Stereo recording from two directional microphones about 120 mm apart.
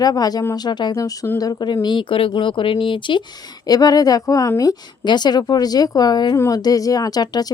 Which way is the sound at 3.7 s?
35° left (ahead or behind).